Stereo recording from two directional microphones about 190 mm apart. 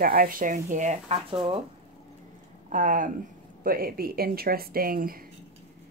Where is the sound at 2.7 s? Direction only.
45° right (ahead or behind).